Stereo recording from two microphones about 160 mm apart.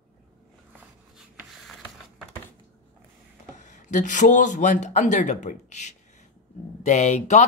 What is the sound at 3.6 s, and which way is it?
Speech, 50° left (ahead or behind).